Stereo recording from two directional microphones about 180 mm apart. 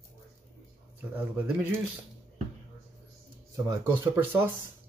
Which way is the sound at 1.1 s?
10° right (ahead or behind).